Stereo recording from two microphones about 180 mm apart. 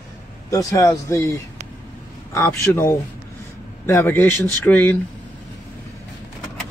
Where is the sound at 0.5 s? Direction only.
20° left (ahead or behind).